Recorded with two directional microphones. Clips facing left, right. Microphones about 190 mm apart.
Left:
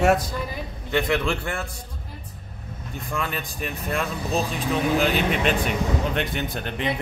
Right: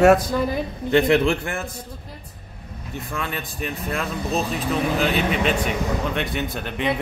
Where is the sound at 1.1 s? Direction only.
20° right (ahead or behind).